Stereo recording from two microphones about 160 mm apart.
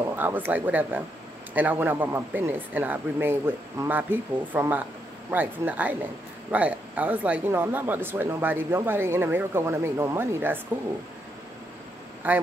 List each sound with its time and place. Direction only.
0.1 s speech: 10° right (ahead or behind)
12.2 s speech: 10° right (ahead or behind)